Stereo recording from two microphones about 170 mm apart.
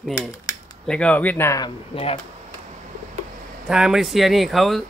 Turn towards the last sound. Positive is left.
turn(degrees=0)  # may be behind; listen again after turning